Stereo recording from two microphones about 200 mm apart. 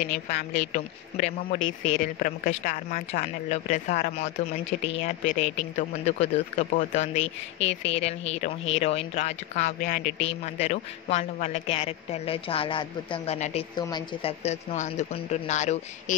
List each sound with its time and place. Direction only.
0.3 s speech: 35° left (ahead or behind)